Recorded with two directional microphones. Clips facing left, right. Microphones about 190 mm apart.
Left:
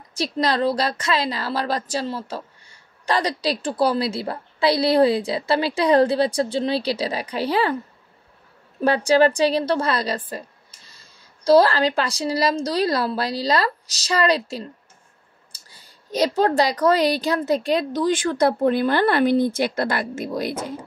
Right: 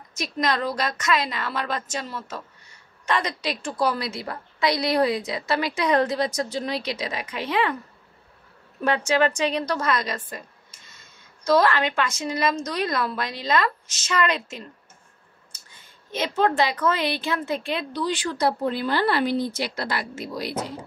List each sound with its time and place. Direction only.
0.1 s a woman's voice: 30° left (ahead or behind)
8.7 s a woman's voice: 35° left (ahead or behind); by 20.7 s 50° left (ahead or behind)